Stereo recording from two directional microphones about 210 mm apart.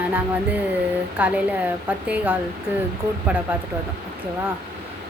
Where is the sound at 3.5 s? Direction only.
10° right (ahead or behind).